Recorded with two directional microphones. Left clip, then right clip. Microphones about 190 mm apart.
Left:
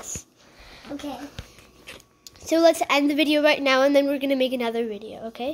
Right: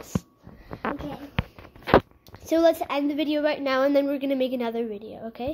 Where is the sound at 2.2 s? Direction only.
Centre (ahead or behind).